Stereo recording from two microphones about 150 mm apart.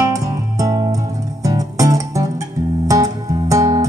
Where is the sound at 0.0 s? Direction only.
20° right (ahead or behind).